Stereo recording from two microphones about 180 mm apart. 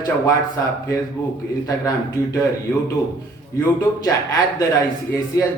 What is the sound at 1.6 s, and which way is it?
Speech, 20° left (ahead or behind).